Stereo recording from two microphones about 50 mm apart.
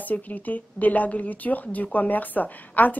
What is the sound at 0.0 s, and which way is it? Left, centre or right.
A woman's voice, left.